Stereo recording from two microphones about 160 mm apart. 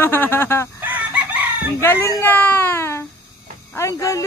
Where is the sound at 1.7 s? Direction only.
15° left (ahead or behind).